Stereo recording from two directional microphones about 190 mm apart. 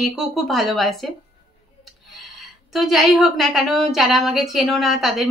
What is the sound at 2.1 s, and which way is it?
A woman's voice, centre (ahead or behind).